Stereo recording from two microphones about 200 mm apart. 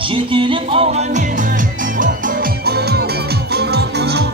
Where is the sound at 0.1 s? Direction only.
25° right (ahead or behind).